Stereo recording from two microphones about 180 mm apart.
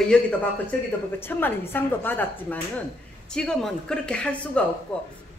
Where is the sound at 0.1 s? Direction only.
5° left (ahead or behind).